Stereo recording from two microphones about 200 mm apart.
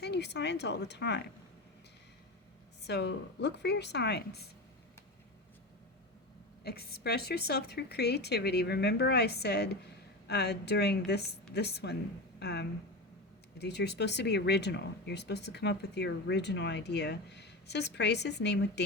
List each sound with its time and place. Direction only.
0.0 s speech: 55° left (ahead or behind)
2.8 s speech: 60° left (ahead or behind)
6.7 s speech: 50° left (ahead or behind)